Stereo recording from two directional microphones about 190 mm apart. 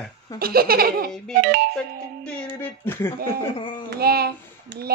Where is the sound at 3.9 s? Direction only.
55° right (ahead or behind).